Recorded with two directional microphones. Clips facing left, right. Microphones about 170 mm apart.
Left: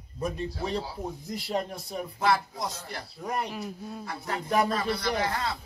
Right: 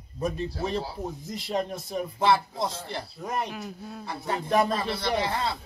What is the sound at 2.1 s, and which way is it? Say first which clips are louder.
Speech: right 3 dB; 25° right (ahead or behind).